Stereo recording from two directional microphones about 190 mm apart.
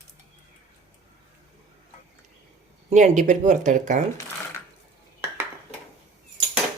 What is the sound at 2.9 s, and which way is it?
Speech, 40° right (ahead or behind).